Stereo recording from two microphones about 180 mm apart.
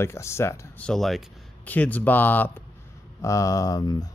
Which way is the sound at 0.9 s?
Centre (ahead or behind).